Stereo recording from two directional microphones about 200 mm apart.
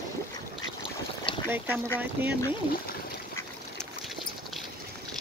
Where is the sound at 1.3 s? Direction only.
25° left (ahead or behind).